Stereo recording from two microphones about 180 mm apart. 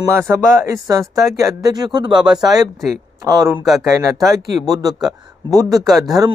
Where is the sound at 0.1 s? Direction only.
15° right (ahead or behind).